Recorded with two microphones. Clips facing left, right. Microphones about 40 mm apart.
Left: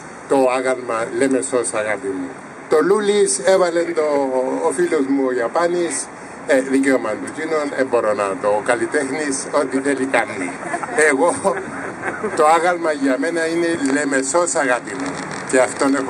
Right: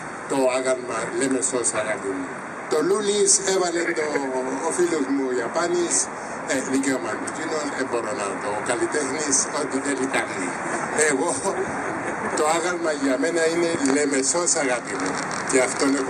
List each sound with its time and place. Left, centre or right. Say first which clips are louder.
0.5 s a man's voice: left 4 dB; centre
13.9 s speech: left 5 dB; left